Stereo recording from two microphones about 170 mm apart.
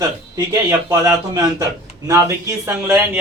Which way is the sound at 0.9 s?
15° right (ahead or behind).